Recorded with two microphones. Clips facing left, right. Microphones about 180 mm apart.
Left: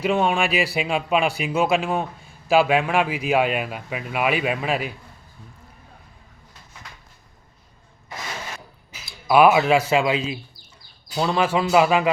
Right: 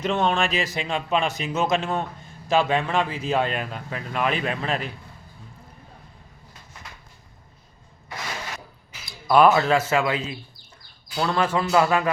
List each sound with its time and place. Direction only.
0.0 s a man's voice: 10° left (ahead or behind)
9.0 s a man's voice: 5° left (ahead or behind)